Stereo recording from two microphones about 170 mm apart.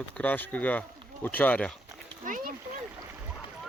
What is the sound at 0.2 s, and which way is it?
Speech, 10° left (ahead or behind).